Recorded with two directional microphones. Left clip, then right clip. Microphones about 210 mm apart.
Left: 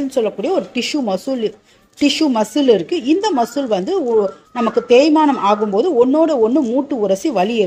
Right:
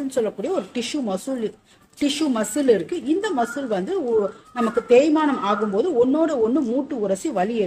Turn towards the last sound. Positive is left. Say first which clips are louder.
# left 7 dB
turn(degrees=25)  # may be behind; listen again after turning